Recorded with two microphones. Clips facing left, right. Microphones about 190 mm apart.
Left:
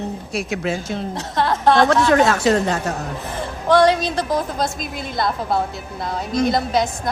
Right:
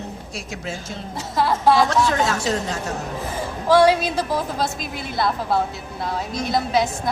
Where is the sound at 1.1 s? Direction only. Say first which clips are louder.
Right 1 dB; 5° right (ahead or behind).